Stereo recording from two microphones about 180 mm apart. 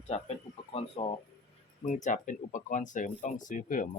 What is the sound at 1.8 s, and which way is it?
Speech, 45° left (ahead or behind).